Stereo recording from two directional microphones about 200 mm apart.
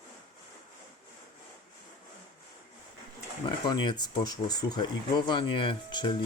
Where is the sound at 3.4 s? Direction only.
20° left (ahead or behind).